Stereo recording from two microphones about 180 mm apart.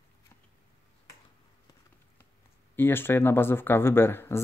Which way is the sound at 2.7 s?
10° left (ahead or behind).